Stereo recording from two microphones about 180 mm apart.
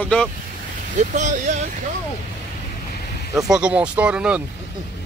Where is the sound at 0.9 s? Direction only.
45° right (ahead or behind).